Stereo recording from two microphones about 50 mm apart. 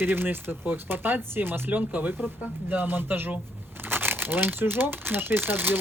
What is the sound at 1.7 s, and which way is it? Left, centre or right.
Speech, right.